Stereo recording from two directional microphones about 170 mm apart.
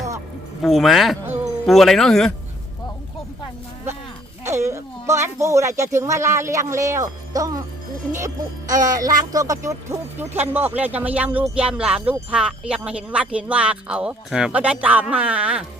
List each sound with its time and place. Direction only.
0.6 s speech: centre (ahead or behind)
4.4 s speech: 15° right (ahead or behind)